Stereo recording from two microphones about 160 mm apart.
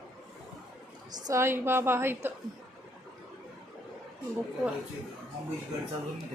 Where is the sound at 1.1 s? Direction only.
20° right (ahead or behind).